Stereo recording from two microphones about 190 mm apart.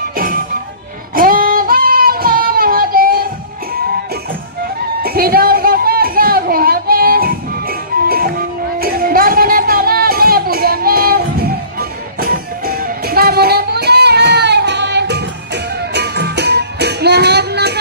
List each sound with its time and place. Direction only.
0.1 s music: 50° right (ahead or behind)
1.1 s singing: 50° right (ahead or behind)
5.0 s a sound: 50° right (ahead or behind)